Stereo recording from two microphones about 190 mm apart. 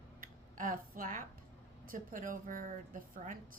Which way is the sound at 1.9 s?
45° right (ahead or behind).